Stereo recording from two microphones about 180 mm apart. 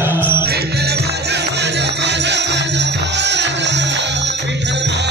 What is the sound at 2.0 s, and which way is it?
Music, 75° right (ahead or behind).